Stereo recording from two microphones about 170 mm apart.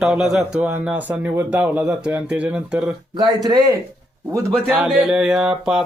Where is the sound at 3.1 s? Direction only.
25° right (ahead or behind).